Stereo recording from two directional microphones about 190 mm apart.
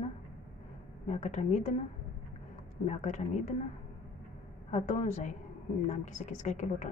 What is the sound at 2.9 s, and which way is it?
Speech, 40° left (ahead or behind).